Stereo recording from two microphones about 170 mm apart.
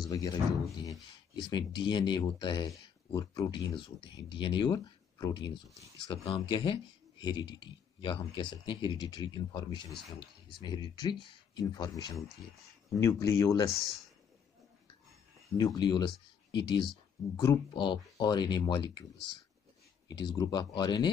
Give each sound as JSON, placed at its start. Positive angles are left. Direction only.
{"t": 0.1, "sound": "speech", "side_deg": 20}
{"t": 15.5, "sound": "speech", "side_deg": 25}
{"t": 20.1, "sound": "speech", "side_deg": 25}